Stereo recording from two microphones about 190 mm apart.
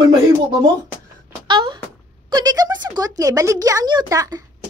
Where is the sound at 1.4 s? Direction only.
25° right (ahead or behind).